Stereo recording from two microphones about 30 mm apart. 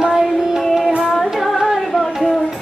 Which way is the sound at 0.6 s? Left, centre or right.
Centre.